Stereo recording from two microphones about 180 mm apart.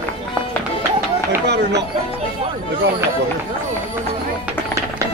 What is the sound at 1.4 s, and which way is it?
Speech, 70° right (ahead or behind).